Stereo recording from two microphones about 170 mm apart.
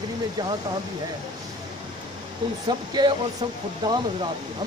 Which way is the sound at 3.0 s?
25° right (ahead or behind).